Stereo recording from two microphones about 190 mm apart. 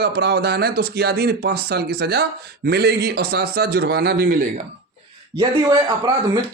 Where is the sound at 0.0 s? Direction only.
60° right (ahead or behind).